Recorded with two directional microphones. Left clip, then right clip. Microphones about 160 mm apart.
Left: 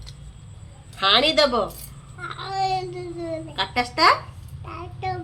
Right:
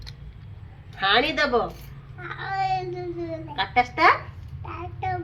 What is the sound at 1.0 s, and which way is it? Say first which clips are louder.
A child's voice: left 3 dB; 35° left (ahead or behind).